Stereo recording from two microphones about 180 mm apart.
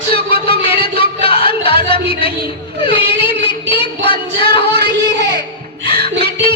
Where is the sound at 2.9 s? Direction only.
30° left (ahead or behind).